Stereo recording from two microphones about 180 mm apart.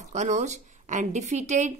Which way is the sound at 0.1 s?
40° right (ahead or behind).